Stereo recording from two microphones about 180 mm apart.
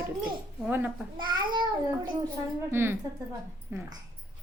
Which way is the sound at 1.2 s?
25° right (ahead or behind).